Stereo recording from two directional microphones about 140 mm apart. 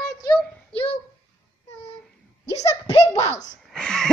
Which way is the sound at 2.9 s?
60° left (ahead or behind).